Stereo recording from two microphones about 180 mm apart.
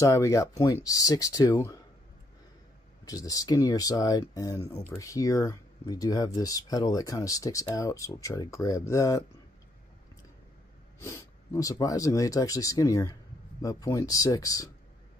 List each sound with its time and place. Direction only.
0.0 s speech: 15° left (ahead or behind)
3.1 s speech: 20° left (ahead or behind)
11.0 s speech: 15° left (ahead or behind)